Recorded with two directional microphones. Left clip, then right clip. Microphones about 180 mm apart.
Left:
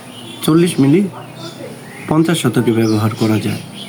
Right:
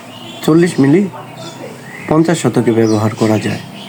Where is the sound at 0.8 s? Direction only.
35° left (ahead or behind).